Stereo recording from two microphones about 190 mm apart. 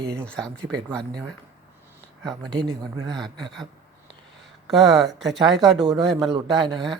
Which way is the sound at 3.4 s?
Centre (ahead or behind).